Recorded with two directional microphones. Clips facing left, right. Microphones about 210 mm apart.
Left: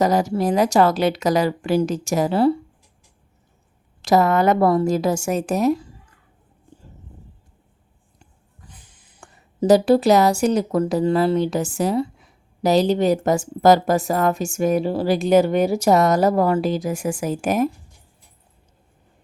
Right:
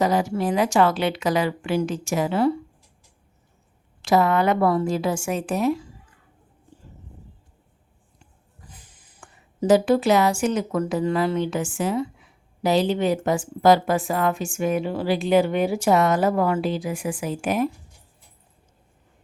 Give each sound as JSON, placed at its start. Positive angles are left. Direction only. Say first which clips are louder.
{"t": 0.0, "sound": "speech", "louder": "left 3 dB", "side_deg": 40}
{"t": 4.0, "sound": "speech", "louder": "left 3 dB", "side_deg": 40}
{"t": 9.2, "sound": "speech", "louder": "left 4 dB", "side_deg": 40}